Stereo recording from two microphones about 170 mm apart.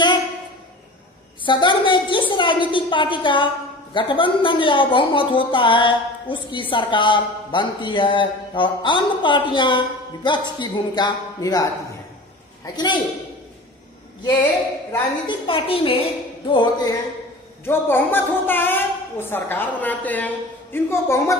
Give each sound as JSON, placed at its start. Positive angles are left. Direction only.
{"t": 1.4, "sound": "speech", "side_deg": 30}
{"t": 12.7, "sound": "speech", "side_deg": 25}
{"t": 15.2, "sound": "a woman's voice", "side_deg": 30}
{"t": 17.6, "sound": "a woman's voice", "side_deg": 10}